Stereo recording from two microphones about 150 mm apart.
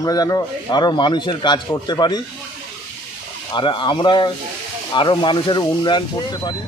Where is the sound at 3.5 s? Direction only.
30° left (ahead or behind).